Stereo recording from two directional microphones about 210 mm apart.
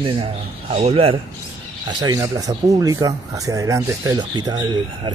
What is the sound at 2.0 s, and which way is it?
Speech, 15° right (ahead or behind).